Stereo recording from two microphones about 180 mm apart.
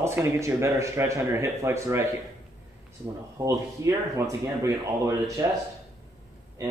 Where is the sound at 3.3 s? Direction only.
15° right (ahead or behind).